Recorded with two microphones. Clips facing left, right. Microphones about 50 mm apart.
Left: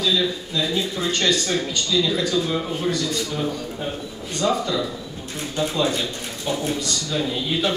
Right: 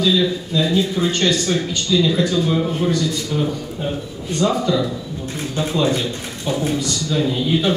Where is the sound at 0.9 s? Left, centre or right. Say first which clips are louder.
Right 3 dB; centre.